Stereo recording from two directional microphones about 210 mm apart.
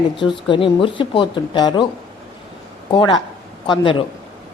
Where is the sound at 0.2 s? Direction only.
25° left (ahead or behind).